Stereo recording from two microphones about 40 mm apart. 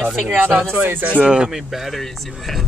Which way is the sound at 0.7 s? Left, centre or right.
Right.